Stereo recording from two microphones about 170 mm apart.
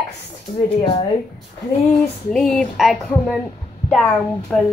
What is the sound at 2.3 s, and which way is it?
A woman's voice, centre (ahead or behind).